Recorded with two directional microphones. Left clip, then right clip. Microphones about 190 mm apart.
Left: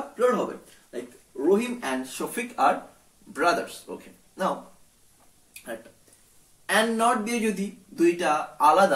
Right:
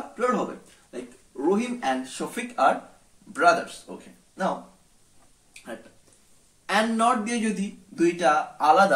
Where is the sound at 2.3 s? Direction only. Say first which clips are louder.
Right 1 dB; 25° right (ahead or behind).